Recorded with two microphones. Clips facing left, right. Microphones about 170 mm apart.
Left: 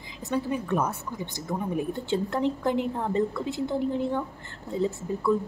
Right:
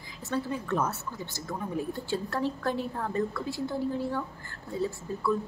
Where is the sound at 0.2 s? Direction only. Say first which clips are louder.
Left 3 dB; 15° left (ahead or behind).